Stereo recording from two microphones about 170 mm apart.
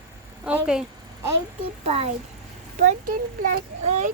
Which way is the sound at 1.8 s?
35° right (ahead or behind).